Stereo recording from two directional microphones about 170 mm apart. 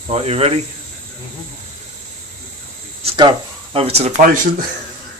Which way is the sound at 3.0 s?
30° right (ahead or behind).